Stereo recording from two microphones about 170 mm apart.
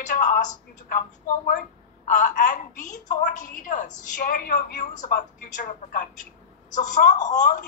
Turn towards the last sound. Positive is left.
turn(degrees=45)  # may be behind; listen again after turning